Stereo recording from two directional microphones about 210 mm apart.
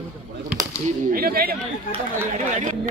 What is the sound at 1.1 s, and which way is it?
A man's voice, 45° right (ahead or behind).